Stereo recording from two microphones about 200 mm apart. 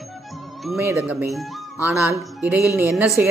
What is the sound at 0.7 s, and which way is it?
Speech, 10° right (ahead or behind).